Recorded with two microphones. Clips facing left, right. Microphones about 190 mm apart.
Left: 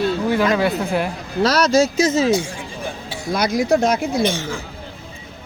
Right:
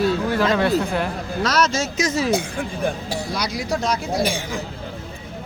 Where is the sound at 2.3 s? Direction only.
55° right (ahead or behind).